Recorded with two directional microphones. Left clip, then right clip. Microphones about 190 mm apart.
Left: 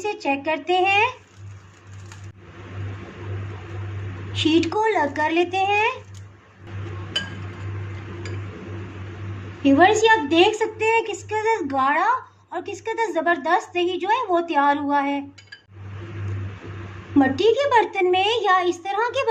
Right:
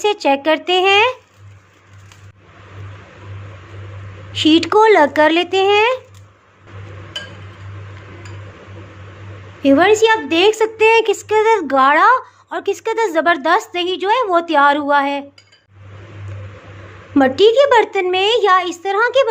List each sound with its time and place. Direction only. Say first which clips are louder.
0.0 s a woman's voice: right 9 dB; 45° right (ahead or behind)
4.3 s speech: right 7 dB; 40° right (ahead or behind)
9.6 s a woman's voice: right 4 dB; 40° right (ahead or behind)
17.2 s a woman's voice: right 7 dB; 40° right (ahead or behind)